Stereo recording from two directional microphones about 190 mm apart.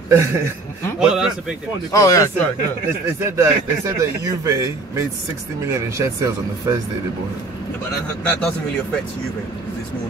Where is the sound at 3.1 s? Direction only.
15° right (ahead or behind).